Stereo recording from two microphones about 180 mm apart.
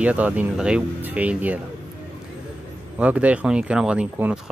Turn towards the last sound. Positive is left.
turn(degrees=-5)  # may be behind; listen again after turning